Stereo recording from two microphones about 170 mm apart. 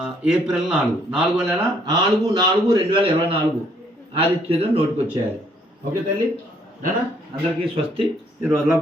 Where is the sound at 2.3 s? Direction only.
25° right (ahead or behind).